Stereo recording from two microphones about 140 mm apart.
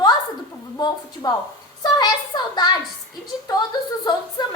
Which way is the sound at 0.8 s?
30° left (ahead or behind).